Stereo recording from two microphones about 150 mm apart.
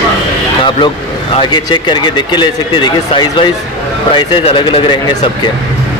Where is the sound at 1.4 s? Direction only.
30° left (ahead or behind).